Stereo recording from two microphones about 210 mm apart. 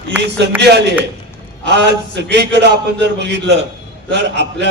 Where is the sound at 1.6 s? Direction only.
55° right (ahead or behind).